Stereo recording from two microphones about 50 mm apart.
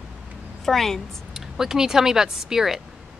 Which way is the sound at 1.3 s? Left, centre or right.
Centre.